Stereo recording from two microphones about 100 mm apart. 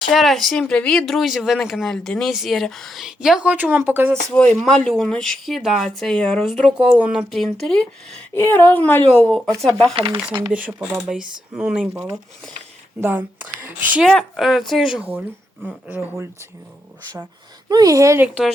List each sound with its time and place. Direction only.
0.1 s speech: centre (ahead or behind); by 4.1 s 20° right (ahead or behind)
4.1 s a woman's voice: 10° left (ahead or behind)
8.3 s a woman's voice: 20° left (ahead or behind)
10.2 s speech: 10° right (ahead or behind)
13.0 s speech: 20° right (ahead or behind)
14.0 s speech: centre (ahead or behind)
15.6 s speech: 20° right (ahead or behind)
17.7 s speech: 40° right (ahead or behind)